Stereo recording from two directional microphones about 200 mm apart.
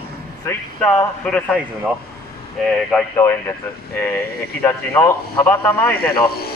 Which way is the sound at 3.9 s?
10° left (ahead or behind).